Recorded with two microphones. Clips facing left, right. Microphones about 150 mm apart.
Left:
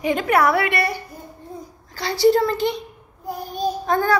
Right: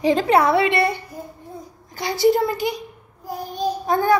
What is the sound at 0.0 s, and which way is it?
A woman's voice, 30° right (ahead or behind).